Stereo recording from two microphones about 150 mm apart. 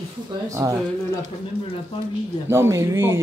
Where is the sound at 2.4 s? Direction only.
15° right (ahead or behind).